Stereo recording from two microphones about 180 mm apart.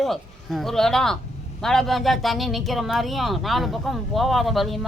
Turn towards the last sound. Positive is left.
turn(degrees=0)  # may be behind; listen again after turning